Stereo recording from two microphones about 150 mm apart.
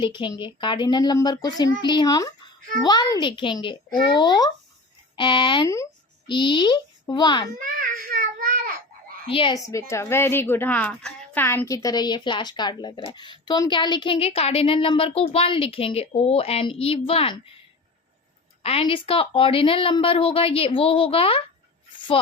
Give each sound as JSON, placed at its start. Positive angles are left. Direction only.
{"t": 0.0, "sound": "a woman's voice", "side_deg": 30}
{"t": 7.6, "sound": "child singing", "side_deg": -65}
{"t": 9.3, "sound": "a woman's voice", "side_deg": 35}
{"t": 9.6, "sound": "a woman's voice", "side_deg": 20}
{"t": 18.6, "sound": "a woman's voice", "side_deg": 40}
{"t": 21.9, "sound": "music", "side_deg": 35}